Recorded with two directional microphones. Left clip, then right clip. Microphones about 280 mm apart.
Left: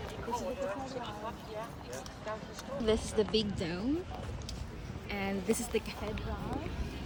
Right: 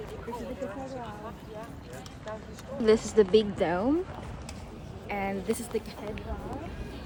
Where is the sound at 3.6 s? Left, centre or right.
Right.